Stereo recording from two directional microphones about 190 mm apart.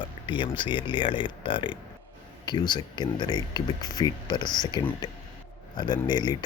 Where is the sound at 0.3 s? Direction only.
25° left (ahead or behind).